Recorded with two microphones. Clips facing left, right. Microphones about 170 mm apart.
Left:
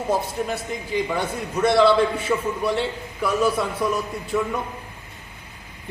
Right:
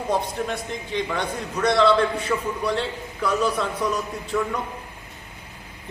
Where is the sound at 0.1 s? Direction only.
5° left (ahead or behind).